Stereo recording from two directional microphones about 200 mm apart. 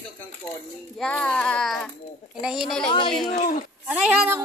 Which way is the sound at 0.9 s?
5° left (ahead or behind).